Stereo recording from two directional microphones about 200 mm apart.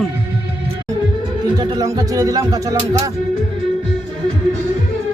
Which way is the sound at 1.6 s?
20° right (ahead or behind).